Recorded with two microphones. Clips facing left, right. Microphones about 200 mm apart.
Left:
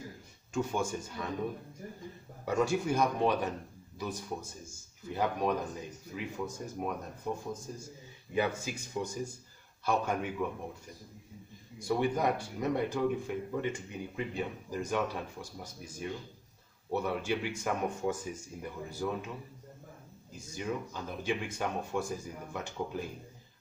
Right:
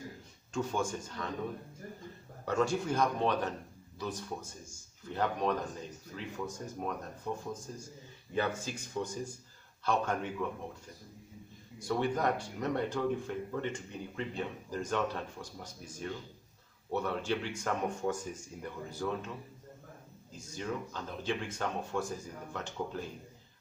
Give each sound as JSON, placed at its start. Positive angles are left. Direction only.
{"t": 0.5, "sound": "speech", "side_deg": 10}
{"t": 11.9, "sound": "speech", "side_deg": 10}
{"t": 20.3, "sound": "speech", "side_deg": 10}